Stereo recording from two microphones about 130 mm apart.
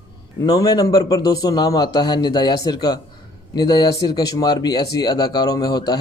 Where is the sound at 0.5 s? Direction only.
30° left (ahead or behind).